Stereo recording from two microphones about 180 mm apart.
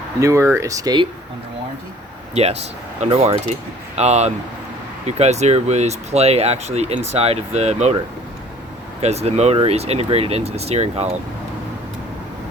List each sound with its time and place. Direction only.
0.2 s speech: 15° right (ahead or behind)
2.3 s speech: 35° right (ahead or behind)
9.0 s speech: 35° right (ahead or behind)